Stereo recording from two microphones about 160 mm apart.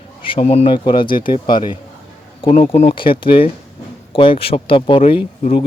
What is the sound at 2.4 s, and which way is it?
A man's voice, 40° left (ahead or behind).